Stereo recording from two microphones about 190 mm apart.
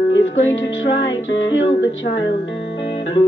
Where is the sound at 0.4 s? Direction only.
80° left.